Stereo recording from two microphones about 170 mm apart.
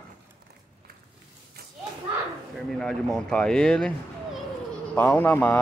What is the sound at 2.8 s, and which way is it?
Speech, 5° left (ahead or behind).